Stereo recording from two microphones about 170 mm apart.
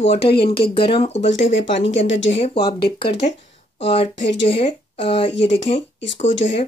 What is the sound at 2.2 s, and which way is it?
Speech, 40° left (ahead or behind).